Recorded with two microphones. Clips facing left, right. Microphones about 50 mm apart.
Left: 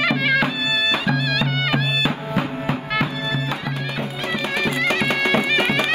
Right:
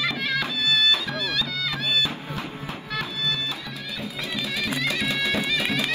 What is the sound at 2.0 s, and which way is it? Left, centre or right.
Music, left.